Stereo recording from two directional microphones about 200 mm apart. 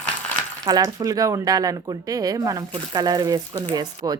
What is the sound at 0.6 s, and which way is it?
Speech, 15° right (ahead or behind).